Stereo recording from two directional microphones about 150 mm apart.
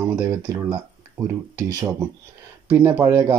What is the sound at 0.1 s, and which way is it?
Speech, 25° right (ahead or behind).